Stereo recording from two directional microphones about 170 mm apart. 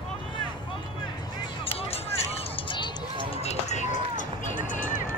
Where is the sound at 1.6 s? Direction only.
35° left (ahead or behind).